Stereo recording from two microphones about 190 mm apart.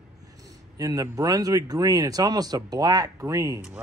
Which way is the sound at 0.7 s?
20° right (ahead or behind).